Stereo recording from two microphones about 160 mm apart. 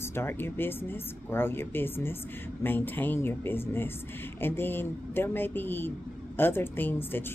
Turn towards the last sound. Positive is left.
turn(degrees=15)  # may be behind; listen again after turning